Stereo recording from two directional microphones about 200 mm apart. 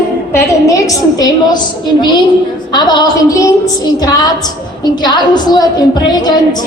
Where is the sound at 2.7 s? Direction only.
20° left (ahead or behind).